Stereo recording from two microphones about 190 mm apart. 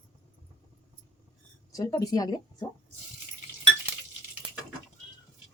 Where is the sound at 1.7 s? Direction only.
20° left (ahead or behind).